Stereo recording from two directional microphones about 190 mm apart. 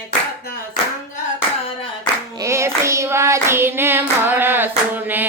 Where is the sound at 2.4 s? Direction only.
15° right (ahead or behind).